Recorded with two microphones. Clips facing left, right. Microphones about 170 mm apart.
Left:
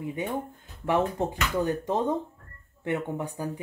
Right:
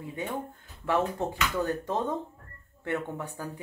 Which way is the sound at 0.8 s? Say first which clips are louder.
Left 2 dB; 20° left (ahead or behind).